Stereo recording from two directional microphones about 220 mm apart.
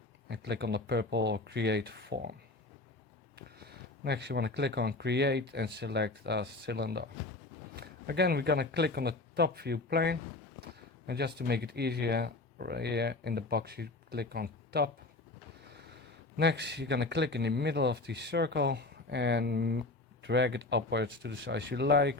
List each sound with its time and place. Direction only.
0.3 s speech: 50° right (ahead or behind)
3.3 s speech: 45° right (ahead or behind)
16.4 s speech: 50° right (ahead or behind)